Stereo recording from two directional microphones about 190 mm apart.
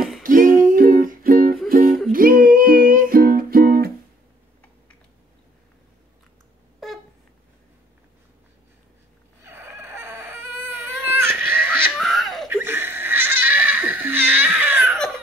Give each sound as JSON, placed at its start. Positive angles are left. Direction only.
{"t": 0.2, "sound": "music", "side_deg": -45}
{"t": 9.4, "sound": "baby cry", "side_deg": -10}
{"t": 12.0, "sound": "laughter", "side_deg": 0}
{"t": 12.4, "sound": "laughter", "side_deg": -10}